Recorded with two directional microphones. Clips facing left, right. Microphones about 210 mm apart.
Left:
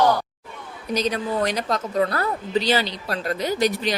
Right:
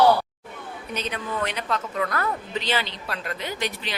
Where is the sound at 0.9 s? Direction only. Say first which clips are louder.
Left 7 dB; 35° left (ahead or behind).